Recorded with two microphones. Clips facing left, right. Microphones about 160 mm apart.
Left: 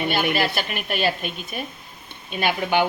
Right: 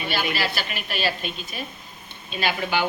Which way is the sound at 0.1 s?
50° left (ahead or behind).